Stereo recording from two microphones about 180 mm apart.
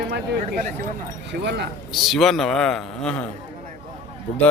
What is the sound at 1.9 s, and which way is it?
A man's voice, centre (ahead or behind).